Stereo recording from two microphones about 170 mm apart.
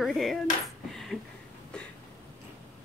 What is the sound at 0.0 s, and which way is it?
Dishes, centre (ahead or behind).